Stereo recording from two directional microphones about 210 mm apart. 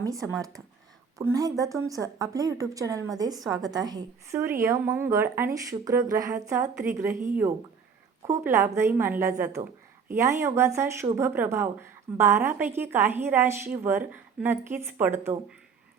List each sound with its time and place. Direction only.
0.0 s speech: 15° right (ahead or behind)